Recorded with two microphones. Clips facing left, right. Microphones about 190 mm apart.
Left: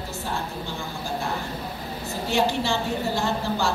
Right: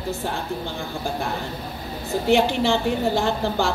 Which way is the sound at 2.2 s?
60° right (ahead or behind).